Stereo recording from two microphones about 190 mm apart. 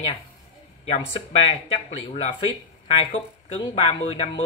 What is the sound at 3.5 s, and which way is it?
Speech, 30° left (ahead or behind).